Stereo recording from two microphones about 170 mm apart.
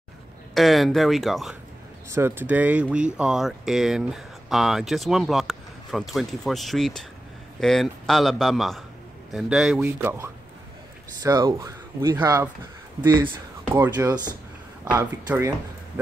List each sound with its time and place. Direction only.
0.6 s speech: centre (ahead or behind)
2.0 s speech: 15° right (ahead or behind)
9.8 s speech: 15° right (ahead or behind)